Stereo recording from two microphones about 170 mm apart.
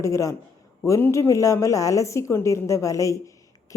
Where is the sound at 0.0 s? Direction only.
20° left (ahead or behind).